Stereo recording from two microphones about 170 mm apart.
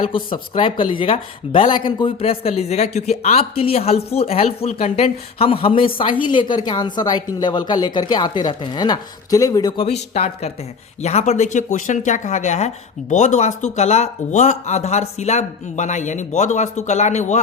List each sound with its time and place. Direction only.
0.0 s a woman's voice: 30° left (ahead or behind)
9.7 s speech: 35° left (ahead or behind)